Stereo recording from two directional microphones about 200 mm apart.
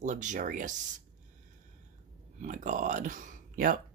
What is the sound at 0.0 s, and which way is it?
Speech, 40° right (ahead or behind).